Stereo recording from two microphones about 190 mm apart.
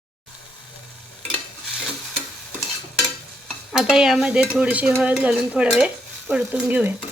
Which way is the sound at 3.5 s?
Centre (ahead or behind).